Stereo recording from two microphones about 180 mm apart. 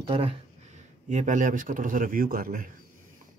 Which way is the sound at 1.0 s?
45° right (ahead or behind).